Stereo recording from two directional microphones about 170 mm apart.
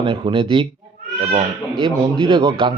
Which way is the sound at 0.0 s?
30° right (ahead or behind).